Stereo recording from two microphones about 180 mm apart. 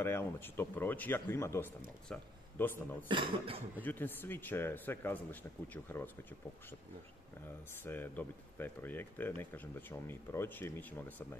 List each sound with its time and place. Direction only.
0.0 s speech: 15° left (ahead or behind)
3.1 s speech: 30° right (ahead or behind)
3.8 s speech: 10° left (ahead or behind)
7.8 s speech: 10° left (ahead or behind)